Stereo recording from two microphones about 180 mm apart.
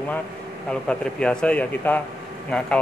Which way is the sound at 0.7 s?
5° left (ahead or behind).